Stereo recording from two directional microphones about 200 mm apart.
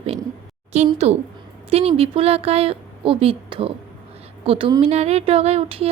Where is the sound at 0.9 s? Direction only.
30° right (ahead or behind).